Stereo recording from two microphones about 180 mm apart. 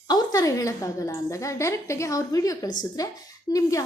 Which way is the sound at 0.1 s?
20° left (ahead or behind).